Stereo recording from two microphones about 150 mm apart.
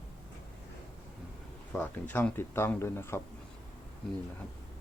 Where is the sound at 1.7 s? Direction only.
15° left (ahead or behind).